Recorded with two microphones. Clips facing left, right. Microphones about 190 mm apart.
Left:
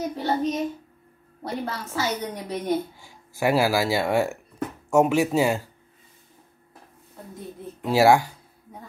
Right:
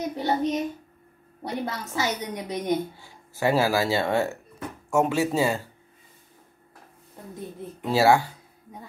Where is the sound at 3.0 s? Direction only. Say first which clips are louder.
Left 1 dB; 10° left (ahead or behind).